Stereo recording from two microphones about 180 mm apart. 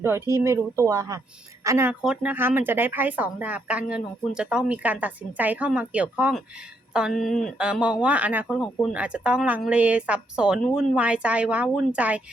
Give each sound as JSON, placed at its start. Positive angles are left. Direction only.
{"t": 0.0, "sound": "speech", "side_deg": -15}